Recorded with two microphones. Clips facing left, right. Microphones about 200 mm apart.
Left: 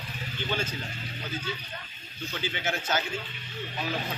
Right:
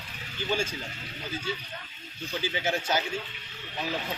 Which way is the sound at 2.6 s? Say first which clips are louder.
Right 1 dB; 10° right (ahead or behind).